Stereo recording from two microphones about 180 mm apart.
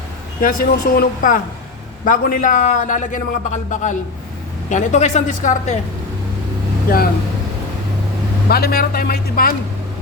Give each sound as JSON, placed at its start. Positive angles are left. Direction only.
{"t": 0.4, "sound": "a man's voice", "side_deg": 55}
{"t": 8.4, "sound": "speech", "side_deg": 60}